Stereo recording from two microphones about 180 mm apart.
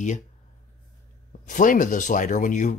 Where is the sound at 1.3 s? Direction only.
45° left (ahead or behind).